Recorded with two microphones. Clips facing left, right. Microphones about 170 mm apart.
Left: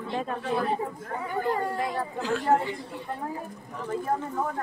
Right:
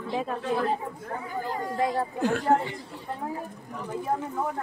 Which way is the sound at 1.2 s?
65° left (ahead or behind).